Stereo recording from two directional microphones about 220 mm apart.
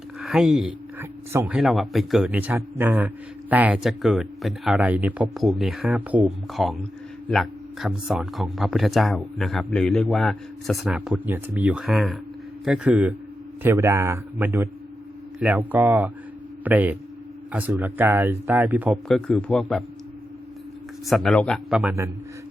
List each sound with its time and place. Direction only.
0.2 s speech: centre (ahead or behind)
21.1 s speech: centre (ahead or behind)